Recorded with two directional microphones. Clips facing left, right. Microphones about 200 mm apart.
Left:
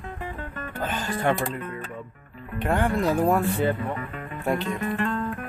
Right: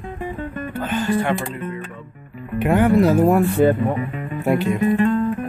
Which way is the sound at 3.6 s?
50° right (ahead or behind).